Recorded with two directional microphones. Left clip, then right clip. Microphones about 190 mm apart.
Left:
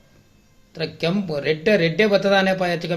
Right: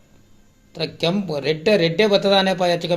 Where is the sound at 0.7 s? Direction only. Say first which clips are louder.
Right 2 dB; 20° right (ahead or behind).